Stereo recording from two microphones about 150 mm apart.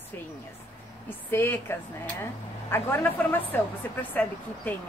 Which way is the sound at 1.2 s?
15° left (ahead or behind).